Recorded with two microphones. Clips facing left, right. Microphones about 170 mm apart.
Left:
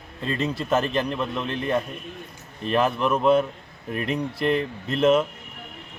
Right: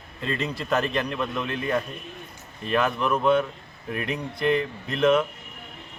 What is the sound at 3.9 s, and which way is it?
Speech, 40° left (ahead or behind).